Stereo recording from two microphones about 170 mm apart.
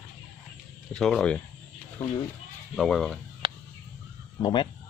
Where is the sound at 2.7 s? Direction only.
Centre (ahead or behind).